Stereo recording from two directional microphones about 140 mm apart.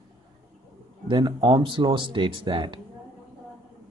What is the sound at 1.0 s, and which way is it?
Speech, 35° right (ahead or behind).